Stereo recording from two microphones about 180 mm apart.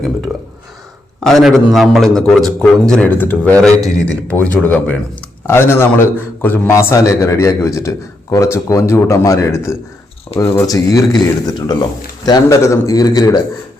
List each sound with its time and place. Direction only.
1.2 s a man's voice: centre (ahead or behind); by 13.4 s 20° left (ahead or behind)